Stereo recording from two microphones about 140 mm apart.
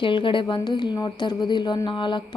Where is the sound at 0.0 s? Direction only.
35° left (ahead or behind).